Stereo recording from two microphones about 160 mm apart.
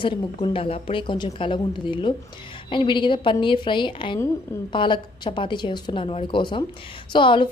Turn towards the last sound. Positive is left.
turn(degrees=30)  # may be behind; listen again after turning